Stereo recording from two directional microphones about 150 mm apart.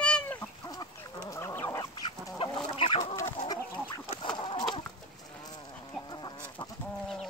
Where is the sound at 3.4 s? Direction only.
25° left (ahead or behind).